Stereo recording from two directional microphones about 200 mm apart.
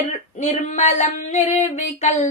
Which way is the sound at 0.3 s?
35° left (ahead or behind).